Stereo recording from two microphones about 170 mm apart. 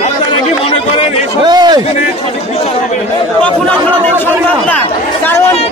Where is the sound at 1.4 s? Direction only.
25° right (ahead or behind).